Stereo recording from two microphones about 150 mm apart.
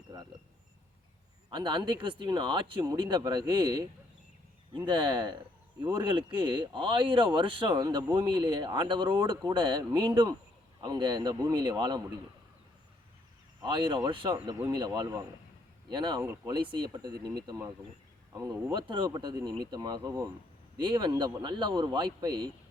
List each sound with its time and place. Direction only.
1.5 s a man's voice: 30° right (ahead or behind)
13.6 s a man's voice: 30° right (ahead or behind)
18.7 s a man's voice: 30° right (ahead or behind)